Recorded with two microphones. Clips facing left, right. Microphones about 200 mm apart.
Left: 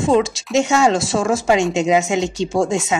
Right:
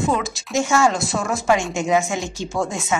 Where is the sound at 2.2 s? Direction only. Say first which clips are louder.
Left 7 dB; 75° left (ahead or behind).